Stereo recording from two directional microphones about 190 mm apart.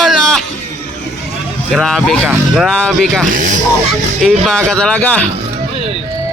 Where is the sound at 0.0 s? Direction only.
Centre (ahead or behind).